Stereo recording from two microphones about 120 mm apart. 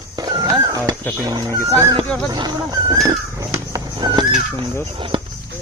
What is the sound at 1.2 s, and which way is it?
Speech, 30° right (ahead or behind).